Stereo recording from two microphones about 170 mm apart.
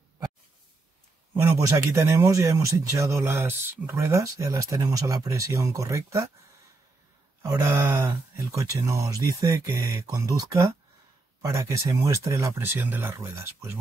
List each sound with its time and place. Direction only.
1.3 s speech: 15° right (ahead or behind)
7.4 s speech: 15° right (ahead or behind)